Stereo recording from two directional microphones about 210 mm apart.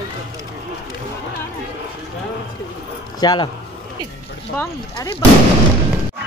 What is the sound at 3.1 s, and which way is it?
Speech, 20° left (ahead or behind).